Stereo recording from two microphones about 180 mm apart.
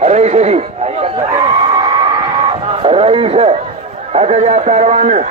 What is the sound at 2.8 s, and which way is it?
A man's voice, 30° right (ahead or behind).